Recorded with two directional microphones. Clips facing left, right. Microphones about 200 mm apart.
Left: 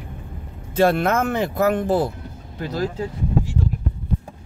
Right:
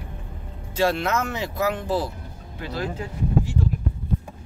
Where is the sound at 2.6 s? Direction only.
40° left (ahead or behind).